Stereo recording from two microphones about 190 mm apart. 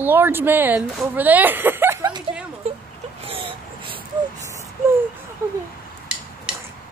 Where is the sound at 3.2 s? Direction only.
30° right (ahead or behind).